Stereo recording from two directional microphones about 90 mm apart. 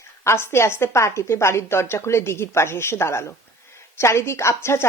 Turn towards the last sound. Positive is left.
turn(degrees=30)  # may be behind; listen again after turning